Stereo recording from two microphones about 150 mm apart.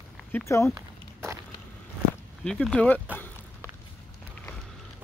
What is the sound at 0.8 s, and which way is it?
Walk, 15° right (ahead or behind).